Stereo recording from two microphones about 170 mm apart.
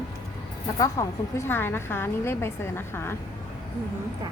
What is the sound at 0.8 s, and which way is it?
A woman's voice, 15° left (ahead or behind).